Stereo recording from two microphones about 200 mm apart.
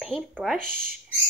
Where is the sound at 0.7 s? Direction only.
45° right (ahead or behind).